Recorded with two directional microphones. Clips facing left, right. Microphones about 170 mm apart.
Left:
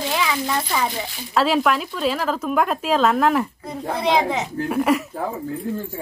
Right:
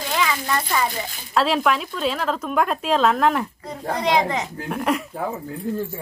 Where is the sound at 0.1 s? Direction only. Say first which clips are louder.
Right 2 dB; 10° left (ahead or behind).